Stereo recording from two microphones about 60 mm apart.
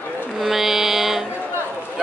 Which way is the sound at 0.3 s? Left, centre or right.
Centre.